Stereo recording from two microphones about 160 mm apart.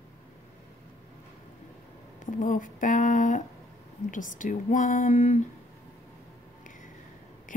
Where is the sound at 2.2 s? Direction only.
55° left (ahead or behind).